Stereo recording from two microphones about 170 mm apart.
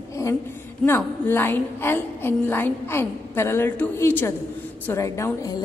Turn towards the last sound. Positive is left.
turn(degrees=20)  # may be behind; listen again after turning